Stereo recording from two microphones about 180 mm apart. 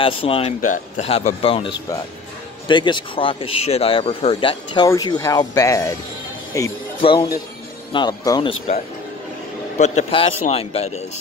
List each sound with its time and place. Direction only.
0.0 s speech: 30° left (ahead or behind)
0.6 s speech: 45° left (ahead or behind); by 6.7 s 15° left (ahead or behind)
7.0 s speech: 30° left (ahead or behind)